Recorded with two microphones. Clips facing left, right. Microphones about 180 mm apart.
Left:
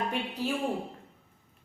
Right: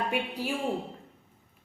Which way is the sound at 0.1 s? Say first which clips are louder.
Right 1 dB; 10° right (ahead or behind).